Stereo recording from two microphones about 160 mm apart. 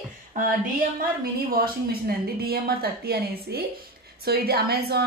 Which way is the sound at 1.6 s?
70° right (ahead or behind).